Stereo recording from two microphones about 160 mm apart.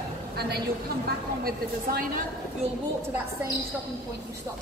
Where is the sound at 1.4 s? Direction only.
65° right (ahead or behind).